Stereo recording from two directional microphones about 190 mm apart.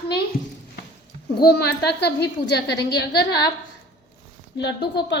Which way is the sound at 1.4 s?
55° left (ahead or behind).